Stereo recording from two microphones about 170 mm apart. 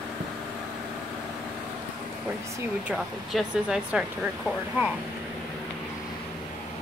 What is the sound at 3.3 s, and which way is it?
Speech, 5° right (ahead or behind).